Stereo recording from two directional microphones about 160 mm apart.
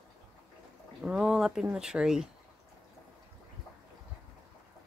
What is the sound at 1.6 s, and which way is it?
Speech, 5° right (ahead or behind).